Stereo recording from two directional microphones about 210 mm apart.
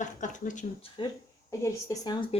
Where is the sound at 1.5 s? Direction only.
15° left (ahead or behind).